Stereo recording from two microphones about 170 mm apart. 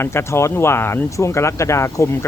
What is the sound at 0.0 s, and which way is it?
Speech, 15° left (ahead or behind).